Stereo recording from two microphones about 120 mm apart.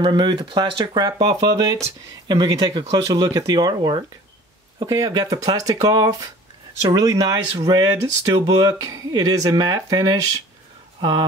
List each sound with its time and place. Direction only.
0.0 s speech: 40° right (ahead or behind)